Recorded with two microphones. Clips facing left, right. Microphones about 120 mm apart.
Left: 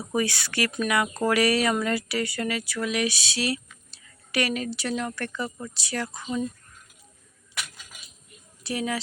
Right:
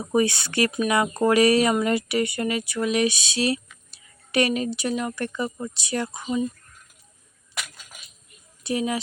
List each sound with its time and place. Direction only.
0.0 s speech: 25° right (ahead or behind)
8.6 s speech: 20° right (ahead or behind)